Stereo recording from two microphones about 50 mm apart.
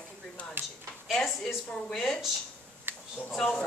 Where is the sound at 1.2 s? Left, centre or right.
Centre.